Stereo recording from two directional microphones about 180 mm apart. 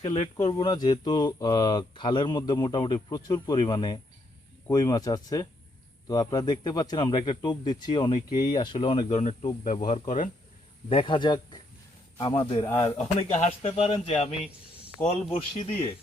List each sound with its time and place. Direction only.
0.0 s speech: 35° left (ahead or behind)
0.5 s speech: 25° left (ahead or behind)
9.0 s speech: 40° left (ahead or behind)
10.8 s speech: 30° left (ahead or behind)
12.6 s speech: 15° left (ahead or behind)
13.1 s speech: 35° left (ahead or behind)